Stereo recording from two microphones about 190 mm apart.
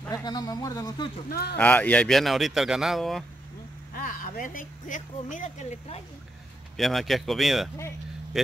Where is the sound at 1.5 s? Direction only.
10° left (ahead or behind).